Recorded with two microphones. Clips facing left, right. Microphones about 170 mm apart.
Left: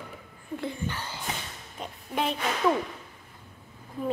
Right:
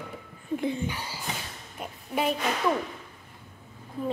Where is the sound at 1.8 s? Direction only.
10° right (ahead or behind).